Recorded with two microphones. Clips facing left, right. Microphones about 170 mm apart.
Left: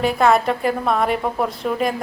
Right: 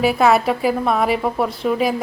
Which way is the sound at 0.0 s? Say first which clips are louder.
Right 1 dB; 5° right (ahead or behind).